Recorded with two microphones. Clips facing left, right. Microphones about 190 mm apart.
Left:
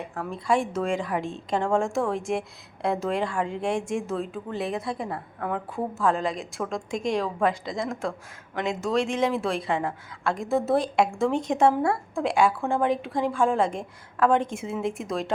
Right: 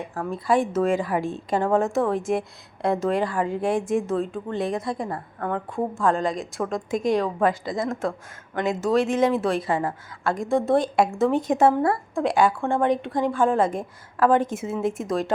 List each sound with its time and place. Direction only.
0.0 s a woman's voice: centre (ahead or behind)